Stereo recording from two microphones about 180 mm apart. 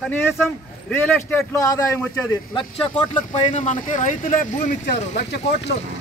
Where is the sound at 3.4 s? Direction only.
40° left (ahead or behind).